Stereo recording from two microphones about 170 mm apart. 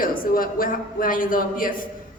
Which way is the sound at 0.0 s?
55° left (ahead or behind).